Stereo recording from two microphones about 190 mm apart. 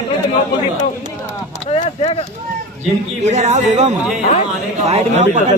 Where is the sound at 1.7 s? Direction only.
35° left (ahead or behind).